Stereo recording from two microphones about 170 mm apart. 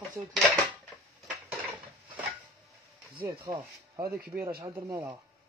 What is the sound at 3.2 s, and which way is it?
Speech, 15° right (ahead or behind).